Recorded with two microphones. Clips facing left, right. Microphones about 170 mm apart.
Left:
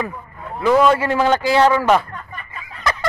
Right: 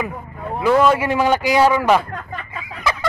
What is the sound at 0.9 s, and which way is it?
Speech, 15° right (ahead or behind).